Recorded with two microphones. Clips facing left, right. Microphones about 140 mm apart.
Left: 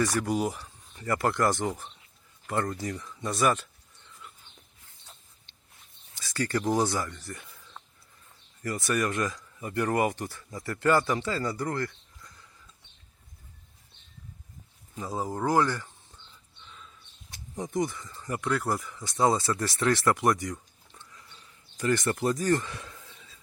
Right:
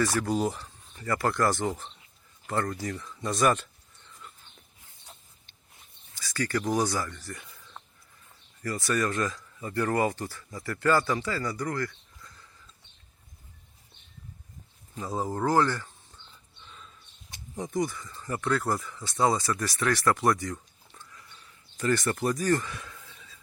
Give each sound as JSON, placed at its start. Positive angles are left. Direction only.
{"t": 0.2, "sound": "speech", "side_deg": 10}
{"t": 1.6, "sound": "a man's voice", "side_deg": 10}
{"t": 6.1, "sound": "speech", "side_deg": 25}
{"t": 7.3, "sound": "a sound", "side_deg": 0}
{"t": 8.6, "sound": "speech", "side_deg": 20}
{"t": 15.2, "sound": "a man's voice", "side_deg": 10}
{"t": 17.6, "sound": "speech", "side_deg": 20}
{"t": 21.0, "sound": "a sound", "side_deg": 20}